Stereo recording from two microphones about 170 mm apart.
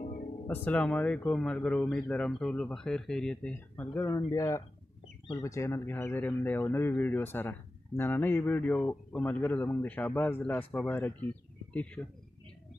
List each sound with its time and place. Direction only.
0.0 s music: 50° left (ahead or behind)
0.5 s a man's voice: 10° left (ahead or behind)